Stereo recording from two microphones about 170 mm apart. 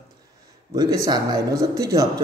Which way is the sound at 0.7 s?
20° right (ahead or behind).